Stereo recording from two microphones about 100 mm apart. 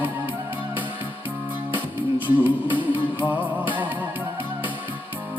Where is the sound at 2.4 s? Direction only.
15° right (ahead or behind).